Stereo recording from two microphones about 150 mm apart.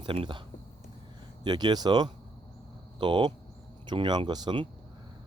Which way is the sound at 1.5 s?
30° right (ahead or behind).